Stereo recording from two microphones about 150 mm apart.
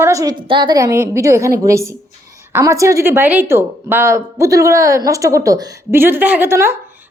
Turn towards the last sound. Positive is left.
turn(degrees=-15)  # may be behind; listen again after turning